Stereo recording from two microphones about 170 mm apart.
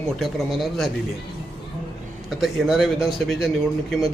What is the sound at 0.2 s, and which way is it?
Speech, centre (ahead or behind).